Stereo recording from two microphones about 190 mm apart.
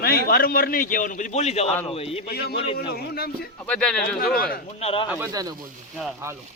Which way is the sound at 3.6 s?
5° left (ahead or behind).